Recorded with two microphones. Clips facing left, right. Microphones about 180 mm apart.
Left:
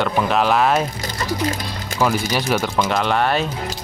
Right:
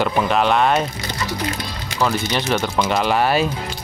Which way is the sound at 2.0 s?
10° left (ahead or behind).